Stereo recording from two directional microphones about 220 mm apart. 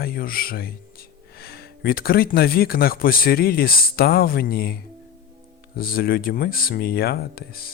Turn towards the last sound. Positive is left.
turn(degrees=45)  # may be behind; listen again after turning